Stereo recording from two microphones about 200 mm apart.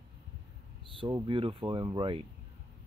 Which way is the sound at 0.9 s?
25° right (ahead or behind).